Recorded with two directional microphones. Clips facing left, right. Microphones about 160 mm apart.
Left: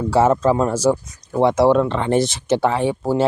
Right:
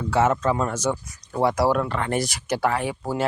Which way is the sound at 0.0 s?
30° left (ahead or behind).